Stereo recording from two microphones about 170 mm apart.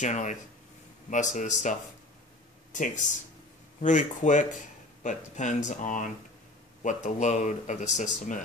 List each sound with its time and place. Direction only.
0.0 s speech: 45° left (ahead or behind)